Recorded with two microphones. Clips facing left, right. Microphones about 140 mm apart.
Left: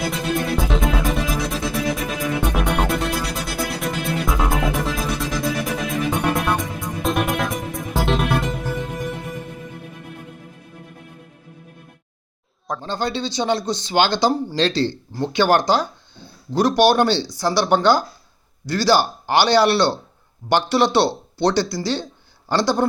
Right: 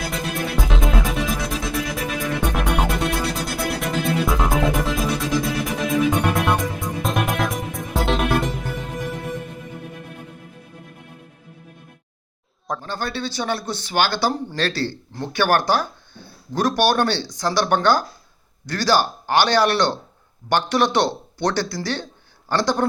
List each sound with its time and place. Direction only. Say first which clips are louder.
0.1 s music: left 3 dB; centre (ahead or behind)
12.8 s speech: left 5 dB; 20° left (ahead or behind)